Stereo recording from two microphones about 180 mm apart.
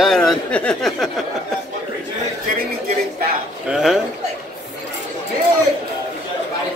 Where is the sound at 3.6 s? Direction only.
5° right (ahead or behind).